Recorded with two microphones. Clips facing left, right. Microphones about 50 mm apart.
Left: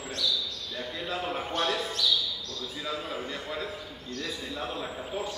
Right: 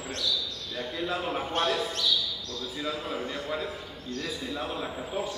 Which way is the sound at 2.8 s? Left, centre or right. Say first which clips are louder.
Right 2 dB; centre.